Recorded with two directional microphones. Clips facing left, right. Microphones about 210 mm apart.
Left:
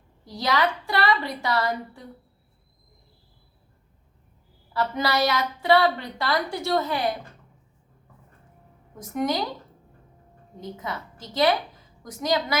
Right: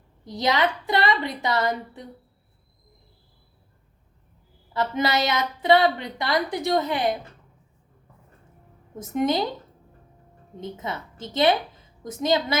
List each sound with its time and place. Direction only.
0.3 s a woman's voice: 20° right (ahead or behind)
4.7 s a woman's voice: 20° right (ahead or behind)
9.0 s a woman's voice: 25° right (ahead or behind)
10.6 s a woman's voice: 25° right (ahead or behind)